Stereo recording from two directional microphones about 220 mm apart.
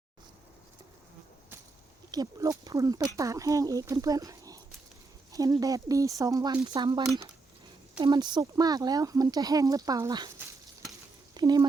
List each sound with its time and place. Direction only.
2.0 s speech: 15° right (ahead or behind)